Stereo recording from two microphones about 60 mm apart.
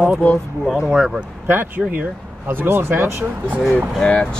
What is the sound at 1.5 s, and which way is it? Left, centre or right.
Speech, right.